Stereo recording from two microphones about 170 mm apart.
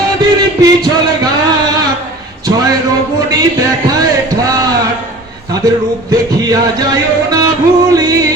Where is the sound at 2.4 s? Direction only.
20° right (ahead or behind).